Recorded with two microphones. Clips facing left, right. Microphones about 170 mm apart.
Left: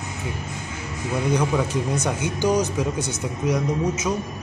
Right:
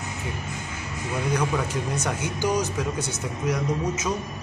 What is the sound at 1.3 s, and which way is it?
Speech, 15° left (ahead or behind).